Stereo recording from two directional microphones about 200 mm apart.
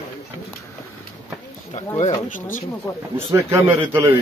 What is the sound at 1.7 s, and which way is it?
Speech, 35° left (ahead or behind).